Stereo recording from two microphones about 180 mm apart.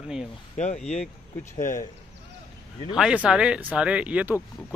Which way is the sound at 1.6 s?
45° left (ahead or behind).